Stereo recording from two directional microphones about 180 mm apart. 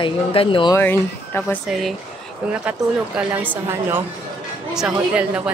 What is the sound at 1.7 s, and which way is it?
Speech, centre (ahead or behind).